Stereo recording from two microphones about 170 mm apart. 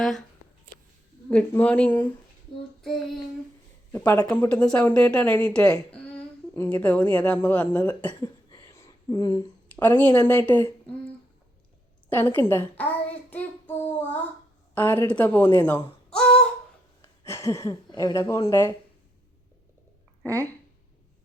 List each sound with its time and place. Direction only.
0.0 s speech: centre (ahead or behind)
1.3 s speech: 10° left (ahead or behind)
3.9 s speech: 20° left (ahead or behind)
4.3 s speech: 10° left (ahead or behind)
8.2 s a sound: 25° left (ahead or behind)
9.8 s speech: 10° left (ahead or behind)
13.3 s child singing: 10° left (ahead or behind)
14.8 s speech: 10° left (ahead or behind)
16.0 s a sound: 5° left (ahead or behind)
17.0 s speech: 15° left (ahead or behind)
20.2 s speech: 15° right (ahead or behind)